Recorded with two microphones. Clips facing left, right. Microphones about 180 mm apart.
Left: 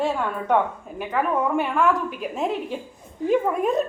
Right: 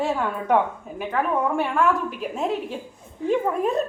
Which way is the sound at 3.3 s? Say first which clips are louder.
Left 1 dB; centre (ahead or behind).